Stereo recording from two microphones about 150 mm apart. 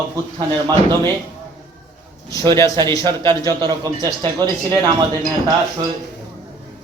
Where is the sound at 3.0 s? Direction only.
30° right (ahead or behind).